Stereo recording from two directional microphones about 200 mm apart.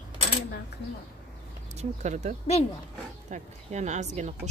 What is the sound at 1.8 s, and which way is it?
Speech, 35° right (ahead or behind).